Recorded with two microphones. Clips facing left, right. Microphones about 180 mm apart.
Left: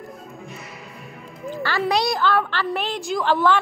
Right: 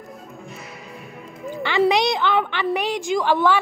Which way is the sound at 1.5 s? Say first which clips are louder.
Even; 20° right (ahead or behind).